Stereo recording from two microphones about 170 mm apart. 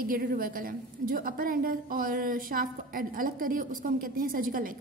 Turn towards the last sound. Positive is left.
turn(degrees=-55)  # may be behind; listen again after turning